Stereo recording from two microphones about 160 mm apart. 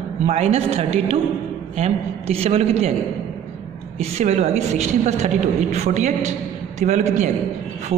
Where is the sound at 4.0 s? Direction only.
45° right (ahead or behind).